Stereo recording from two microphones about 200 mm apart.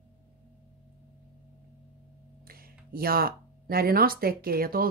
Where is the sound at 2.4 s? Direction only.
50° right (ahead or behind).